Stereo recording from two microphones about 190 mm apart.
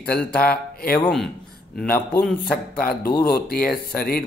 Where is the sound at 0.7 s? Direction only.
55° left (ahead or behind).